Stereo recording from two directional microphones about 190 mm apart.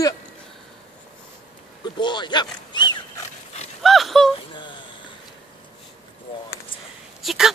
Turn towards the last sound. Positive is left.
turn(degrees=0)  # may be behind; listen again after turning